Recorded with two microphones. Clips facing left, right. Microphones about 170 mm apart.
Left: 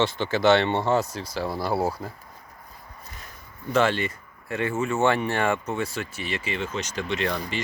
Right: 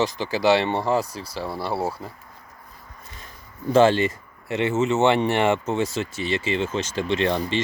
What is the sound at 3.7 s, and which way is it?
Speech, 30° right (ahead or behind).